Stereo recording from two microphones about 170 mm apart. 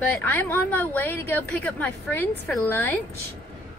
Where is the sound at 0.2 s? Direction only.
10° left (ahead or behind).